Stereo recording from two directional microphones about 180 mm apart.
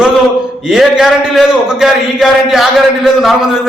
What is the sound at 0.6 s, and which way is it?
A man's voice, 5° right (ahead or behind).